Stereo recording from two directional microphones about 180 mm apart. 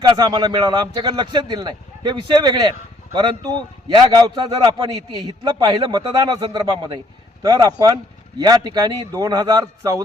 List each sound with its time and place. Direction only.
0.1 s a man's voice: 25° right (ahead or behind)